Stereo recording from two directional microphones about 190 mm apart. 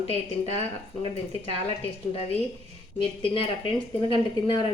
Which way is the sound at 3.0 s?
30° left (ahead or behind).